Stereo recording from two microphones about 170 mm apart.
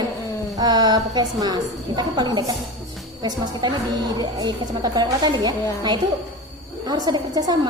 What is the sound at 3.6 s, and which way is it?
A woman's voice, 25° right (ahead or behind).